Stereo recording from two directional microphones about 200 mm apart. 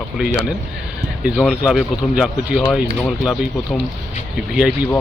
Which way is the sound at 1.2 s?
5° right (ahead or behind).